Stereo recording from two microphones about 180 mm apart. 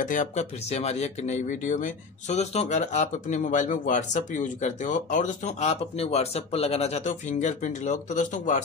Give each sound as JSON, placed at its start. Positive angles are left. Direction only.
{"t": 0.0, "sound": "speech", "side_deg": 45}